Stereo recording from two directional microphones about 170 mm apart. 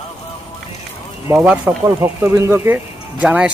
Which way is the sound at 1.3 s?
10° right (ahead or behind).